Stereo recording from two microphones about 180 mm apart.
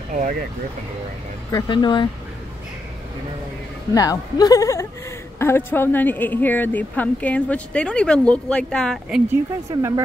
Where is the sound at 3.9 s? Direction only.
20° left (ahead or behind); by 9.4 s 5° right (ahead or behind).